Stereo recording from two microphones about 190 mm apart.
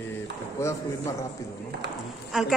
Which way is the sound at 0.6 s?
15° left (ahead or behind).